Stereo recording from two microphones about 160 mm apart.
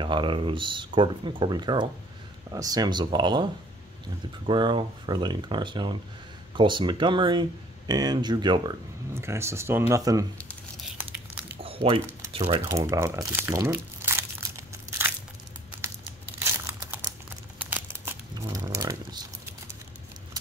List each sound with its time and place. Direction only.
0.0 s speech: 30° right (ahead or behind)
4.5 s speech: 30° right (ahead or behind)
9.1 s speech: 15° right (ahead or behind)
10.3 s tearing: 10° left (ahead or behind)
11.5 s a sound: 35° right (ahead or behind)
12.3 s speech: 35° right (ahead or behind)
12.6 s crumpling: 20° right (ahead or behind)
16.3 s crumpling: 15° right (ahead or behind)
18.8 s a sound: 20° right (ahead or behind)